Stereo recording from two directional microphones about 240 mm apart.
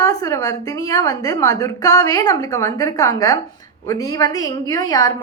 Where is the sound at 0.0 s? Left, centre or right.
Centre.